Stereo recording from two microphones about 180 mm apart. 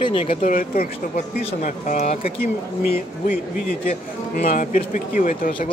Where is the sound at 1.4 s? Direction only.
40° left (ahead or behind).